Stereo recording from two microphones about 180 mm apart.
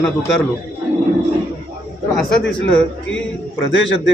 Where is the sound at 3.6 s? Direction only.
90° left.